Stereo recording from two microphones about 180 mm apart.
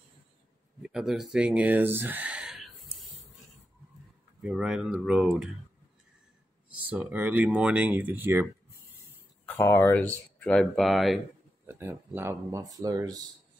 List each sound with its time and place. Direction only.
0.8 s speech: 5° right (ahead or behind)
4.4 s speech: 5° right (ahead or behind)
6.8 s speech: 10° right (ahead or behind)
9.5 s speech: 10° left (ahead or behind)
11.6 s speech: 10° right (ahead or behind)